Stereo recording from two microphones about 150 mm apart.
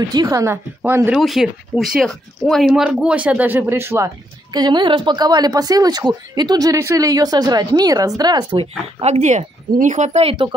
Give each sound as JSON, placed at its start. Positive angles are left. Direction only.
{"t": 0.1, "sound": "a woman's voice", "side_deg": -25}
{"t": 1.1, "sound": "speech", "side_deg": 0}
{"t": 4.5, "sound": "a woman's voice", "side_deg": -30}
{"t": 9.0, "sound": "speech", "side_deg": -50}